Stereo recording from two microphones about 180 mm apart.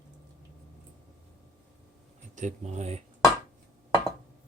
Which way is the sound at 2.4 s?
40° right (ahead or behind).